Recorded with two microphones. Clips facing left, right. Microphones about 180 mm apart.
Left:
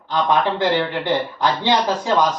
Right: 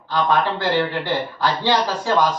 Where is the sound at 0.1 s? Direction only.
20° left (ahead or behind).